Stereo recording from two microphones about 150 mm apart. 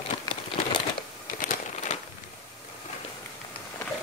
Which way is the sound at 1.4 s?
55° left (ahead or behind).